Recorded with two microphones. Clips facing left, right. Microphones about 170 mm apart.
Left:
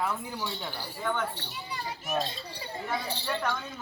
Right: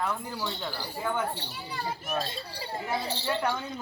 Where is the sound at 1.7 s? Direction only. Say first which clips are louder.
Right 3 dB; 50° right (ahead or behind).